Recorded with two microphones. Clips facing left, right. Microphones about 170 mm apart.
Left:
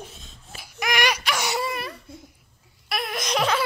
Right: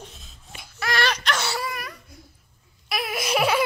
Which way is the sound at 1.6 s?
25° left (ahead or behind).